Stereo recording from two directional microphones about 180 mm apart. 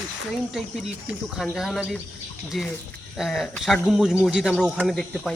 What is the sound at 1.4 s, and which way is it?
Speech, centre (ahead or behind).